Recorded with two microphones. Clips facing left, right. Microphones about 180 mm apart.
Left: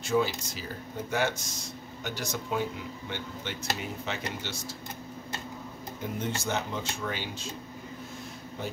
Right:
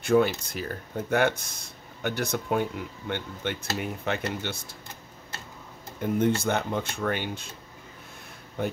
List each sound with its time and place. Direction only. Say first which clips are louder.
0.0 s speech: right 5 dB; 60° right (ahead or behind)
6.1 s speech: right 8 dB; 55° right (ahead or behind)
8.6 s speech: right 7 dB; 55° right (ahead or behind)